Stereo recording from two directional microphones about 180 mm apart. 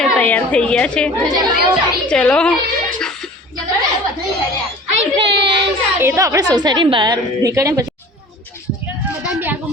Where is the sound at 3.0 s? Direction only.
5° left (ahead or behind).